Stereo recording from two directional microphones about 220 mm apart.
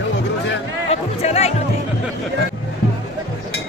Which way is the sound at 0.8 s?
30° left (ahead or behind).